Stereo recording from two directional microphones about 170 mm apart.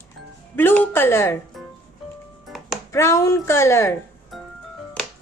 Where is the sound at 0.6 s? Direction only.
10° left (ahead or behind).